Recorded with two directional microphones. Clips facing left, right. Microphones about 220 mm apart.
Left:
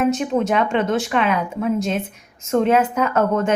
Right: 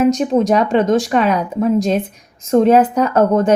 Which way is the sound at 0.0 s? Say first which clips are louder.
Right 5 dB; 40° right (ahead or behind).